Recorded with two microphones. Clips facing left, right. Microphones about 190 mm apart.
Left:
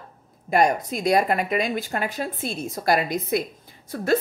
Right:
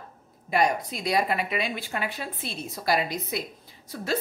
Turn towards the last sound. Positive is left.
turn(degrees=50)  # may be behind; listen again after turning